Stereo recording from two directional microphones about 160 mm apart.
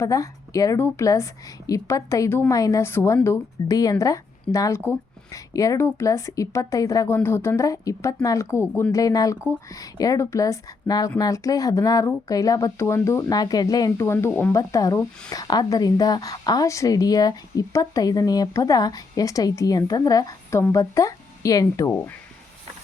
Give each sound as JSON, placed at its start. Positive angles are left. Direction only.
{"t": 0.0, "sound": "a woman's voice", "side_deg": 20}